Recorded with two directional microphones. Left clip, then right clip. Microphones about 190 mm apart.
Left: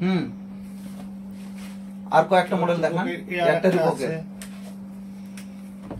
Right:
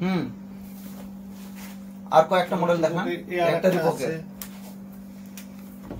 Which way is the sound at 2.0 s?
10° right (ahead or behind).